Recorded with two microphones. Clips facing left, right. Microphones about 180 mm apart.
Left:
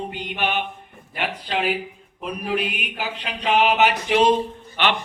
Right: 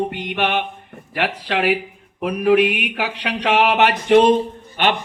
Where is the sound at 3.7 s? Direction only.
60° right (ahead or behind).